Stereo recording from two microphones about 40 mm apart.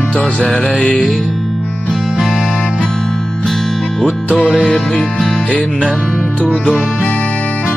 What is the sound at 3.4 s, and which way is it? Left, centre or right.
Music, centre.